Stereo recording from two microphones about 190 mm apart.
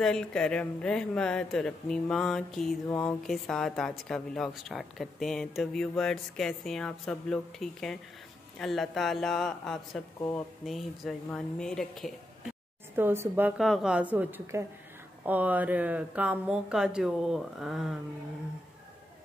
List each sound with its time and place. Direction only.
0.0 s speech: 5° left (ahead or behind)
12.9 s speech: 10° right (ahead or behind)